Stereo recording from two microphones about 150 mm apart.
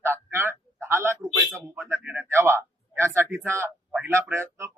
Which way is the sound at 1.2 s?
Centre (ahead or behind).